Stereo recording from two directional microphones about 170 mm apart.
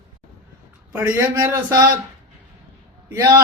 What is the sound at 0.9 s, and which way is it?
Speech, 15° right (ahead or behind).